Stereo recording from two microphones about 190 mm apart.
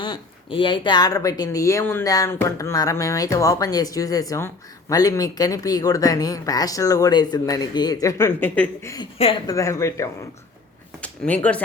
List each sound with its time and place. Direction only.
0.0 s speech: 25° left (ahead or behind); by 11.6 s 5° left (ahead or behind)